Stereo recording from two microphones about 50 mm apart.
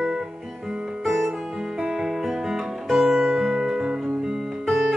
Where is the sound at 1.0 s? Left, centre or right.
Centre.